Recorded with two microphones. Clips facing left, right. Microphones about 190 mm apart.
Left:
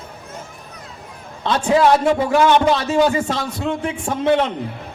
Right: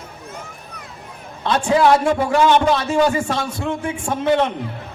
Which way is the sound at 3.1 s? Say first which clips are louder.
Even; 25° left (ahead or behind).